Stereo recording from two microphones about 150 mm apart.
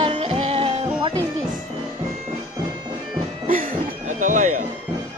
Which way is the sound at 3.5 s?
70° right (ahead or behind).